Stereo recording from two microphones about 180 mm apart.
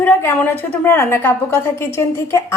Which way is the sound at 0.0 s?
10° left (ahead or behind).